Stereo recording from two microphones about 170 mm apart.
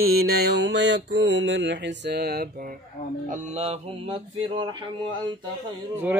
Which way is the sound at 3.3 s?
40° right (ahead or behind).